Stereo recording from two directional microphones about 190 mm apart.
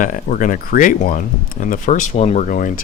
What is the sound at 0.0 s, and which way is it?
Speech, 45° left (ahead or behind).